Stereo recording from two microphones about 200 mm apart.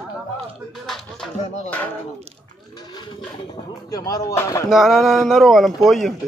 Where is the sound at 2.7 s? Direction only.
20° left (ahead or behind).